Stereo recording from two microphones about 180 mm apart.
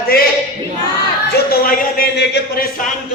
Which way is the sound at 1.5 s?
55° left (ahead or behind).